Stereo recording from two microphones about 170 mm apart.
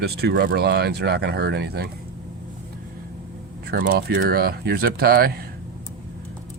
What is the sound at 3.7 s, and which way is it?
Speech, 60° right (ahead or behind).